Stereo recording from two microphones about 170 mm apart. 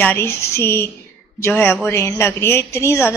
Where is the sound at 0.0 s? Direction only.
15° left (ahead or behind).